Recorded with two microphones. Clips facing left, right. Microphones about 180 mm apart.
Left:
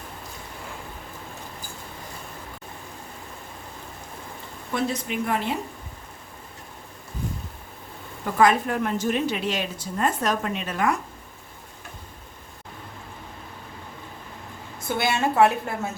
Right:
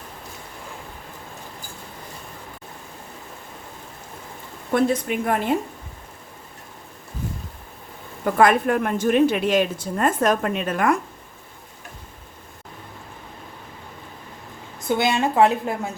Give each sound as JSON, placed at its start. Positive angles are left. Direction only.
{"t": 4.7, "sound": "a woman's voice", "side_deg": -50}
{"t": 8.2, "sound": "a woman's voice", "side_deg": -55}
{"t": 14.8, "sound": "a woman's voice", "side_deg": -20}